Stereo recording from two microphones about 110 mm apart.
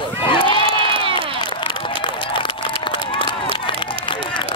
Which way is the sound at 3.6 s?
50° left (ahead or behind).